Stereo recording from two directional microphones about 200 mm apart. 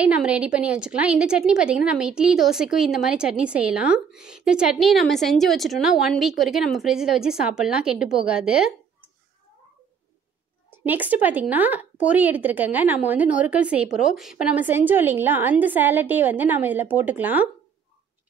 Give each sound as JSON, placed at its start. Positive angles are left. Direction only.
{"t": 0.0, "sound": "a woman's voice", "side_deg": -5}
{"t": 10.8, "sound": "speech", "side_deg": -10}